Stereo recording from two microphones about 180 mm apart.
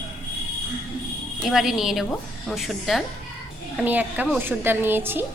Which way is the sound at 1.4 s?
Centre (ahead or behind).